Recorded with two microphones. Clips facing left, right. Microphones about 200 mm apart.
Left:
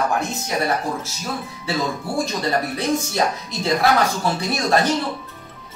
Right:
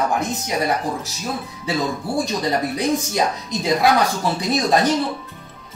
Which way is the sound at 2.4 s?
15° right (ahead or behind).